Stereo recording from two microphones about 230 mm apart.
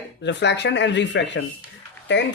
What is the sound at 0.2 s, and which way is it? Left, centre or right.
Speech, left.